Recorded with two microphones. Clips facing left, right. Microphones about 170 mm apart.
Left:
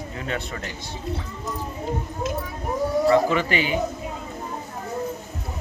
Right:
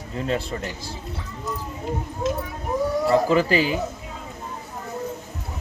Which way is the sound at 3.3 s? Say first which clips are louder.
Right 4 dB; 35° right (ahead or behind).